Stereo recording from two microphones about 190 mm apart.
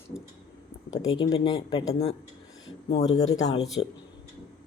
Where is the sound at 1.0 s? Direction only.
90° left.